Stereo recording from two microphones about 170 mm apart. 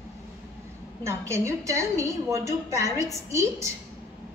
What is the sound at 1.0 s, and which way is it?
A woman's voice, 15° right (ahead or behind).